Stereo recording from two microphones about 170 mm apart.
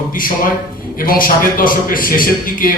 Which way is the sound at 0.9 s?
55° left (ahead or behind).